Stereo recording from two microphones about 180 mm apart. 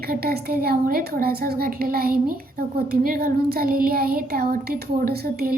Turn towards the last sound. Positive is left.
turn(degrees=-55)  # may be behind; listen again after turning